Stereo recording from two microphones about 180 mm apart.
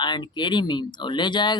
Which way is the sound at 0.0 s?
25° left (ahead or behind).